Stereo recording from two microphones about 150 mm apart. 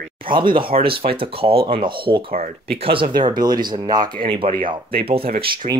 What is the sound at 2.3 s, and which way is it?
Speech, 70° right (ahead or behind).